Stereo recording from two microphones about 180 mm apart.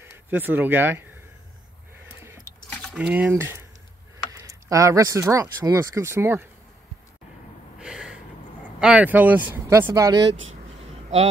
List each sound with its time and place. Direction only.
0.0 s speech: 10° right (ahead or behind)
2.7 s mechanisms: 5° left (ahead or behind)
3.0 s speech: 5° right (ahead or behind)
7.8 s gasp: 5° right (ahead or behind)
8.7 s speech: 5° right (ahead or behind)
10.8 s a sound: 35° right (ahead or behind)